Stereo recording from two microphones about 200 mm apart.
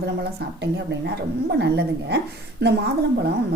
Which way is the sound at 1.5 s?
55° right (ahead or behind).